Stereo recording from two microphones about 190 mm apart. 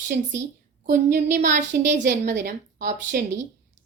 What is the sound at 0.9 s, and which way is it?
A woman's voice, 40° right (ahead or behind).